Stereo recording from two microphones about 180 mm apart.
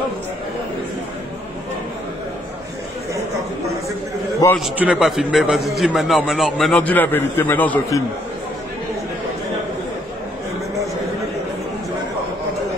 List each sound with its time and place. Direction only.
4.6 s a man's voice: 5° right (ahead or behind)